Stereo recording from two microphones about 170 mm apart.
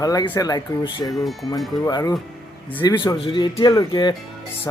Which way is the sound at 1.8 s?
20° left (ahead or behind).